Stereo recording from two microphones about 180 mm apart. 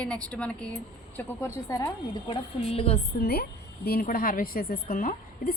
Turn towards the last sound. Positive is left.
turn(degrees=55)  # may be behind; listen again after turning